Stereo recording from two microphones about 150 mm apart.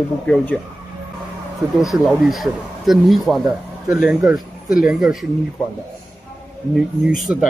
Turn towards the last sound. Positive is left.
turn(degrees=-5)  # may be behind; listen again after turning